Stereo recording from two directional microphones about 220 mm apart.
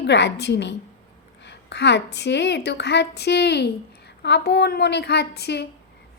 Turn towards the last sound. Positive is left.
turn(degrees=50)  # may be behind; listen again after turning